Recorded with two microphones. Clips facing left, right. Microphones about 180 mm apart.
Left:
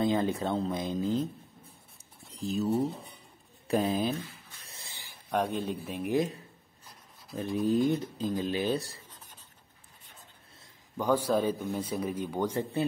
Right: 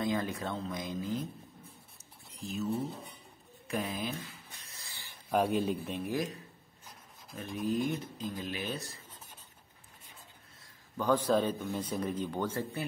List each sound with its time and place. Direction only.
0.0 s speech: 25° left (ahead or behind)
2.3 s speech: 35° left (ahead or behind)
4.6 s a sound: 25° left (ahead or behind)
5.3 s speech: 5° right (ahead or behind)
6.0 s speech: 25° left (ahead or behind)
7.5 s speech: 30° left (ahead or behind)
11.0 s a man's voice: 10° left (ahead or behind)